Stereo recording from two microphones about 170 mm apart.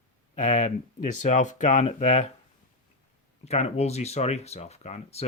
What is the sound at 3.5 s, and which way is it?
Speech, 40° left (ahead or behind).